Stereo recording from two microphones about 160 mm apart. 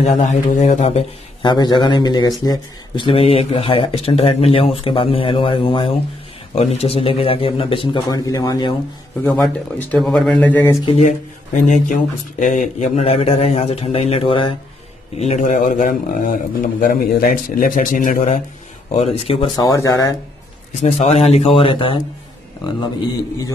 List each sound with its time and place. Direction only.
0.0 s speech: 45° left (ahead or behind)
1.4 s speech: 30° left (ahead or behind)
9.8 s speech: 5° left (ahead or behind)
10.9 s speech: 50° left (ahead or behind)
15.1 s speech: 45° left (ahead or behind)
18.9 s speech: 35° left (ahead or behind); by 20.2 s 20° left (ahead or behind)
20.8 s speech: 40° left (ahead or behind)